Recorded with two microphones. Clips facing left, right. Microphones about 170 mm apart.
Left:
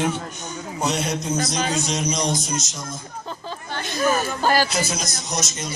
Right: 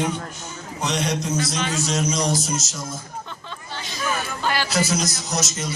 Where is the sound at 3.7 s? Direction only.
55° left (ahead or behind).